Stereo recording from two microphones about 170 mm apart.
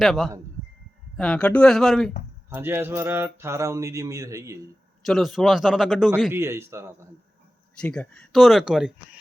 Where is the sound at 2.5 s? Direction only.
15° right (ahead or behind).